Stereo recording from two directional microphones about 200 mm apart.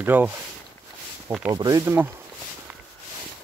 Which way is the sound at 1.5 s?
15° right (ahead or behind).